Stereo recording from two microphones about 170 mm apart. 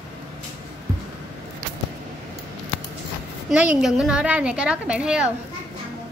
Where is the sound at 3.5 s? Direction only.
5° right (ahead or behind).